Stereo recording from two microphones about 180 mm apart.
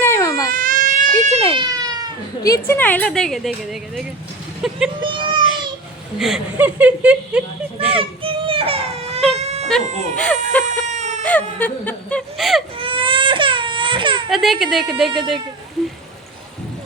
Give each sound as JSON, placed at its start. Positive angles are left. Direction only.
{"t": 0.0, "sound": "baby cry", "side_deg": 15}
{"t": 0.5, "sound": "baby cry", "side_deg": -50}
{"t": 1.5, "sound": "cat", "side_deg": -20}
{"t": 2.4, "sound": "speech", "side_deg": 15}
{"t": 5.0, "sound": "a child's voice", "side_deg": -25}
{"t": 6.1, "sound": "speech", "side_deg": -5}
{"t": 8.2, "sound": "a sound", "side_deg": -30}
{"t": 9.4, "sound": "baby cry", "side_deg": -35}
{"t": 10.2, "sound": "speech", "side_deg": 5}
{"t": 10.8, "sound": "a sound", "side_deg": -40}
{"t": 11.2, "sound": "whimper", "side_deg": 10}
{"t": 12.8, "sound": "baby cry", "side_deg": -30}
{"t": 14.3, "sound": "speech", "side_deg": 0}